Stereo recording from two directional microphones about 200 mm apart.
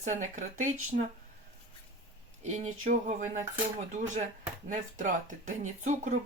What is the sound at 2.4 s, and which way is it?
Speech, 35° right (ahead or behind).